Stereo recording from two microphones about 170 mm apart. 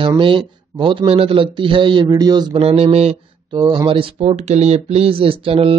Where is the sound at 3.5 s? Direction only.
25° right (ahead or behind).